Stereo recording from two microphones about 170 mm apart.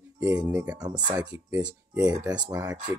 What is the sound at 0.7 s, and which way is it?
Speech, 25° right (ahead or behind).